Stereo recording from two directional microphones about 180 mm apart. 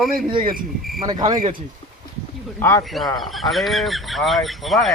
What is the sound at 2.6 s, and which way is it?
Speech, 15° left (ahead or behind).